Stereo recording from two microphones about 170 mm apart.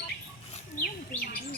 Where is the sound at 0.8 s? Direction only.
65° left (ahead or behind).